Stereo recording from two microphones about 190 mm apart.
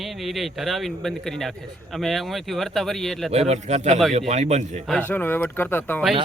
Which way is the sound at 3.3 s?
35° right (ahead or behind).